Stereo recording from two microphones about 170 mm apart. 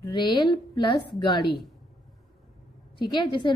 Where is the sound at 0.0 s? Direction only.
25° left (ahead or behind).